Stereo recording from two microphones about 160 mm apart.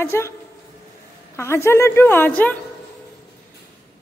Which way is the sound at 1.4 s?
15° left (ahead or behind).